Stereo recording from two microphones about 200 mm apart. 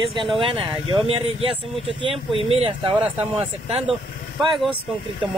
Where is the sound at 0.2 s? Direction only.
25° right (ahead or behind).